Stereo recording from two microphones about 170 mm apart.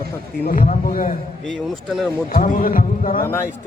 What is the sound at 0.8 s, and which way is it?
Speech, 55° left (ahead or behind).